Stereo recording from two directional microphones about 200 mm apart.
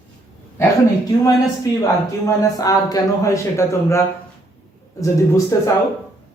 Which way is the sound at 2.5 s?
20° left (ahead or behind).